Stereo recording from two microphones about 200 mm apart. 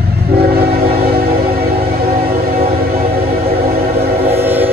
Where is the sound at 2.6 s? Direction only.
30° right (ahead or behind).